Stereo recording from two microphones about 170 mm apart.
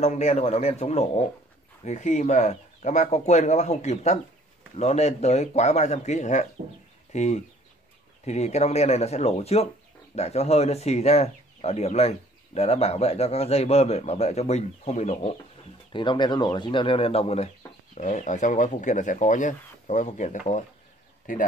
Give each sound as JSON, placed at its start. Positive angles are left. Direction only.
{"t": 0.0, "sound": "speech", "side_deg": 40}
{"t": 15.9, "sound": "speech", "side_deg": 25}